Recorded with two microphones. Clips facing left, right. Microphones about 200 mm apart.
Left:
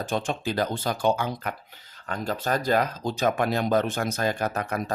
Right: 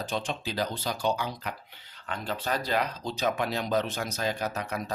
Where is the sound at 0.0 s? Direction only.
50° left (ahead or behind).